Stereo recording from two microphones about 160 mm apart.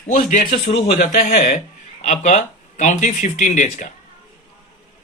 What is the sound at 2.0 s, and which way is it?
Speech, 45° left (ahead or behind).